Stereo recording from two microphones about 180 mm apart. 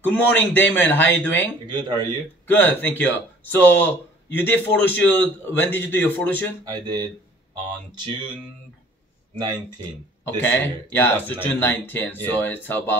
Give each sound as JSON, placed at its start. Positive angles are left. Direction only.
{"t": 0.1, "sound": "a man's voice", "side_deg": 10}
{"t": 1.7, "sound": "speech", "side_deg": -25}
{"t": 2.4, "sound": "a man's voice", "side_deg": 10}
{"t": 6.6, "sound": "speech", "side_deg": -25}
{"t": 10.2, "sound": "a man's voice", "side_deg": 10}